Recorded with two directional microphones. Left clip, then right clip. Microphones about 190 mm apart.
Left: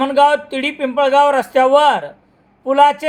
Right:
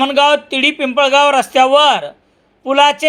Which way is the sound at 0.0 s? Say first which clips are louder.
Right 1 dB; 20° right (ahead or behind).